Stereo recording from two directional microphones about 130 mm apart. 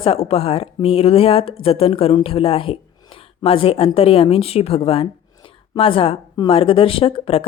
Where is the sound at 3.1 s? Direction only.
45° left (ahead or behind).